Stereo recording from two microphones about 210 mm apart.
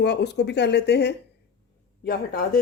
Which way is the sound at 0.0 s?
55° left (ahead or behind).